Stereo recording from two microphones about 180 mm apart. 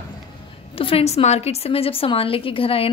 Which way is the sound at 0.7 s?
30° left (ahead or behind).